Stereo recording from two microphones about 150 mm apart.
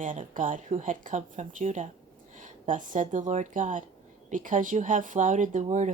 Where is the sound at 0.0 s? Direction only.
60° right (ahead or behind).